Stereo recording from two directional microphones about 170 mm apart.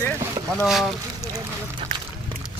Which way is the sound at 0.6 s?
Centre (ahead or behind).